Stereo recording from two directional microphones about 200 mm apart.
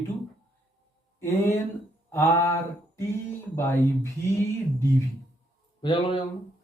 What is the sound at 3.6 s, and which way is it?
Speech, 10° left (ahead or behind).